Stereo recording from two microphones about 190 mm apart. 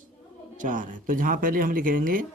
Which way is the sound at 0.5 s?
45° right (ahead or behind).